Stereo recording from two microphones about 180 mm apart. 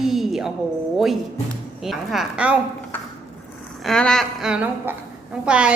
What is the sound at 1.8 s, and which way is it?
Speech, centre (ahead or behind).